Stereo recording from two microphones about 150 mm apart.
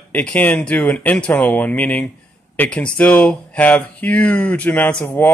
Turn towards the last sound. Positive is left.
turn(degrees=10)  # may be behind; listen again after turning